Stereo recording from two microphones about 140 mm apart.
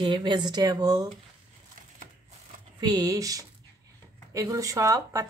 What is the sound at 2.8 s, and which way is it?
Speech, 25° right (ahead or behind).